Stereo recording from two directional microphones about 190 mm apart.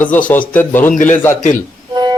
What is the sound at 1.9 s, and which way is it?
Music, 20° right (ahead or behind).